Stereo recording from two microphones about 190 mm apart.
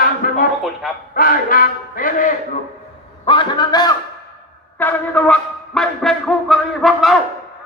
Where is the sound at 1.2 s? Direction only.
45° left (ahead or behind).